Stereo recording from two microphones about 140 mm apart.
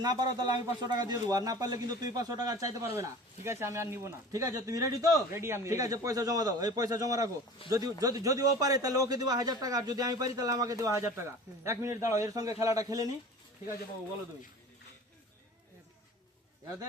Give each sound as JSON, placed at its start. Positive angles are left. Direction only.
{"t": 0.0, "sound": "a man's voice", "side_deg": -30}
{"t": 7.6, "sound": "speech", "side_deg": 40}
{"t": 8.0, "sound": "a man's voice", "side_deg": -25}